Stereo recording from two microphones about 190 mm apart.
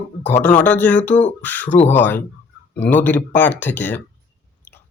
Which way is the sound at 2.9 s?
10° left (ahead or behind).